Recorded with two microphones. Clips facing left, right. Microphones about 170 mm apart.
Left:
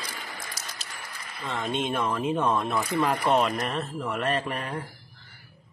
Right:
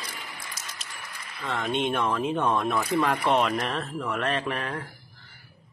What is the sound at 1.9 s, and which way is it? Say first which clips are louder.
Speech: right 1 dB; 5° left (ahead or behind).